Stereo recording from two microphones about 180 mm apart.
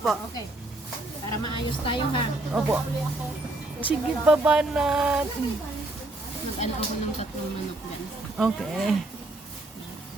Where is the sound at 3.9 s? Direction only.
10° right (ahead or behind).